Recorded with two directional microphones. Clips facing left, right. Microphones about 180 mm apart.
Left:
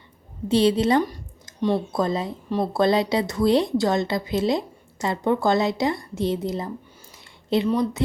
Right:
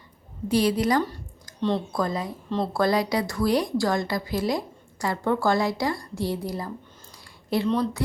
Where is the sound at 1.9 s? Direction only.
25° left (ahead or behind).